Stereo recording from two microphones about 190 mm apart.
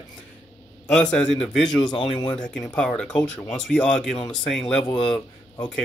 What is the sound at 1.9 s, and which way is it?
Speech, 25° left (ahead or behind).